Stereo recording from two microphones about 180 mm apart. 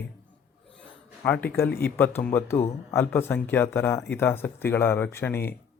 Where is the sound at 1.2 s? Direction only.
10° left (ahead or behind).